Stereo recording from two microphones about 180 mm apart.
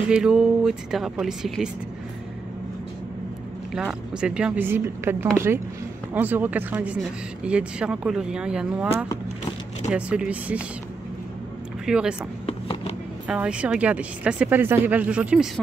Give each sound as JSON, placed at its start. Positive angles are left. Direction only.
{"t": 0.1, "sound": "speech", "side_deg": -5}
{"t": 3.7, "sound": "speech", "side_deg": -5}
{"t": 9.9, "sound": "speech", "side_deg": -5}
{"t": 11.8, "sound": "speech", "side_deg": -5}
{"t": 12.4, "sound": "a sound", "side_deg": 35}
{"t": 13.3, "sound": "speech", "side_deg": -5}